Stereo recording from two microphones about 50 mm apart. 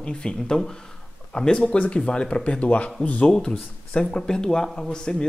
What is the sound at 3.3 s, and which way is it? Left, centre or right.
Speech, centre.